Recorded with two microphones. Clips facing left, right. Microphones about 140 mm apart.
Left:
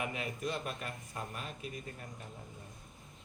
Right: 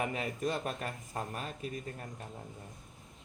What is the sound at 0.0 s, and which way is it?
Speech, 40° right (ahead or behind).